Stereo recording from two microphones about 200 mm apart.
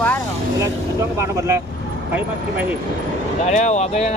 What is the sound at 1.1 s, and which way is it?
Speech, 15° right (ahead or behind).